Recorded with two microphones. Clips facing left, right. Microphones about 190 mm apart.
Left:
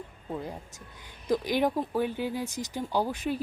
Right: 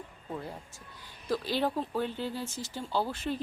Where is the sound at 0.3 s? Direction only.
15° left (ahead or behind).